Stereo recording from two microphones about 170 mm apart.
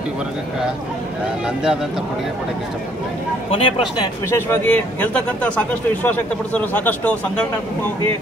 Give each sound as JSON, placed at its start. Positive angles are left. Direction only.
{"t": 3.4, "sound": "a man's voice", "side_deg": 35}
{"t": 4.3, "sound": "a man's voice", "side_deg": 15}